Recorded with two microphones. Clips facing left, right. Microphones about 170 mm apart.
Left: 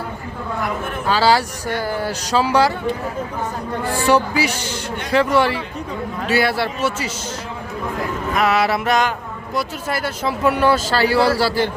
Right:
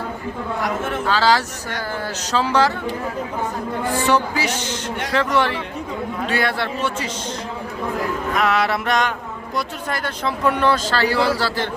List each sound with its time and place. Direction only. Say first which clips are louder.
1.0 s speech: left 3 dB; 10° left (ahead or behind)
3.9 s speech: left 3 dB; 10° left (ahead or behind)
8.4 s a sound: left 3 dB; 5° left (ahead or behind)
9.6 s speech: left 3 dB; 5° left (ahead or behind)